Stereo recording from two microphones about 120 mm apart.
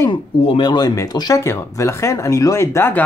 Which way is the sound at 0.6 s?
35° left (ahead or behind).